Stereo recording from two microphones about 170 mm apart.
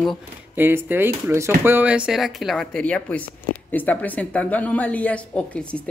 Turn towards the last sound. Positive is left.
turn(degrees=5)  # may be behind; listen again after turning